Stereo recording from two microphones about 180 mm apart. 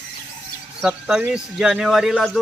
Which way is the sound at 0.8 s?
5° right (ahead or behind).